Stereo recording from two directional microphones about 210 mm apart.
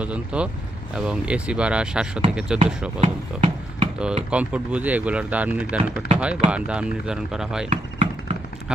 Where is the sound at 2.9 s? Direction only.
25° right (ahead or behind).